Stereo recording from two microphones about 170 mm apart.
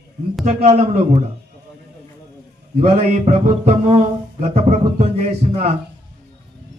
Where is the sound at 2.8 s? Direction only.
40° right (ahead or behind).